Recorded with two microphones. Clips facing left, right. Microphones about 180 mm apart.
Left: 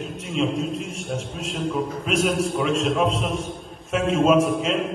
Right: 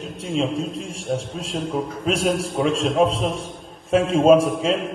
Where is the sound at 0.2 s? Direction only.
30° right (ahead or behind).